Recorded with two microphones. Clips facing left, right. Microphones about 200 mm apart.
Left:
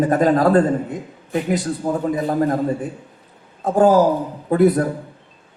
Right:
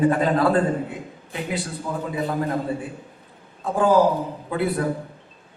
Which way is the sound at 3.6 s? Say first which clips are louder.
Left 4 dB; 40° left (ahead or behind).